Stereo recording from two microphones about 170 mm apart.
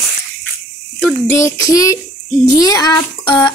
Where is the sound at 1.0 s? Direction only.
15° left (ahead or behind).